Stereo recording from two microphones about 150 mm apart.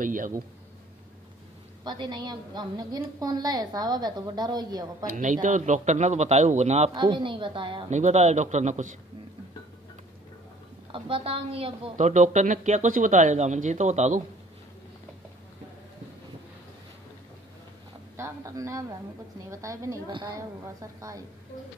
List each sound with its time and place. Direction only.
0.0 s speech: 65° right (ahead or behind)
1.9 s a woman's voice: 30° right (ahead or behind)
5.1 s speech: 60° right (ahead or behind)
6.9 s a woman's voice: 30° right (ahead or behind)
7.9 s speech: 50° right (ahead or behind)
10.9 s a woman's voice: 35° right (ahead or behind)
12.0 s speech: 55° right (ahead or behind)
18.1 s a man's voice: 20° right (ahead or behind)
20.1 s a woman's voice: 35° right (ahead or behind)
20.3 s a woman's voice: 20° right (ahead or behind)